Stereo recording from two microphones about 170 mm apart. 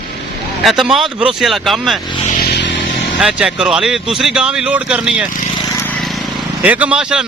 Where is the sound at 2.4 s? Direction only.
80° left.